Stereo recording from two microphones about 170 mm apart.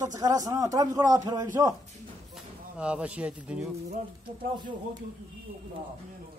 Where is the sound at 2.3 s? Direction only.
5° right (ahead or behind).